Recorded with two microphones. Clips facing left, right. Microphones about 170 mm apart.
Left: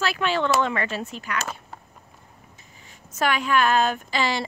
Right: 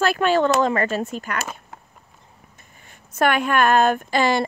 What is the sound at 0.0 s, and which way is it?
A woman's voice, 50° right (ahead or behind).